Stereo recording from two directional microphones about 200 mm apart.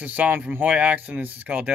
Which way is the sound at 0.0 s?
10° right (ahead or behind).